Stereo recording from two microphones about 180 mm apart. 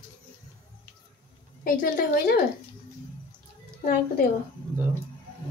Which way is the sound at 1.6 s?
55° left (ahead or behind).